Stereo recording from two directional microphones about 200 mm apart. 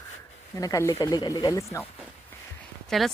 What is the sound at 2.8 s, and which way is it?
Speech, centre (ahead or behind).